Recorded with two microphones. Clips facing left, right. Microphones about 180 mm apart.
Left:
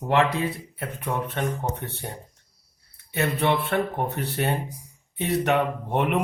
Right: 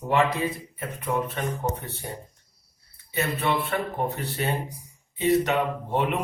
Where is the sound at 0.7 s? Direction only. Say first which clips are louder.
Right 1 dB; 65° left (ahead or behind).